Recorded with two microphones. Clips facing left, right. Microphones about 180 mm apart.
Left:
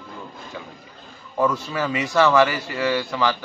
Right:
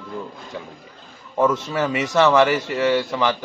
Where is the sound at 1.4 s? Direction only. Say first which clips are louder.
Right 3 dB; 20° right (ahead or behind).